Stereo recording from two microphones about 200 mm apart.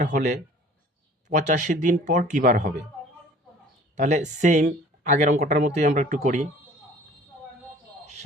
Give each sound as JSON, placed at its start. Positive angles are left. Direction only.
{"t": 0.0, "sound": "speech", "side_deg": -40}
{"t": 3.9, "sound": "speech", "side_deg": -35}